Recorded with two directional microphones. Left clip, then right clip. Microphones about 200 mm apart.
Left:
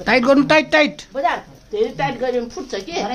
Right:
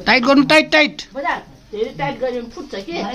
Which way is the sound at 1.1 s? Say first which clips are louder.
Left 3 dB; 45° left (ahead or behind).